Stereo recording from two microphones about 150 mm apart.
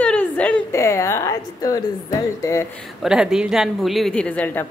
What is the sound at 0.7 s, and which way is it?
A woman's voice, 20° left (ahead or behind).